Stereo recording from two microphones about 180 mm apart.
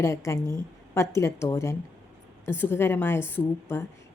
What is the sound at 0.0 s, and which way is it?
A woman's voice, 15° left (ahead or behind).